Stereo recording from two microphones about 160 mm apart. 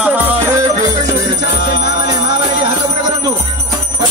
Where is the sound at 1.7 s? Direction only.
90° left.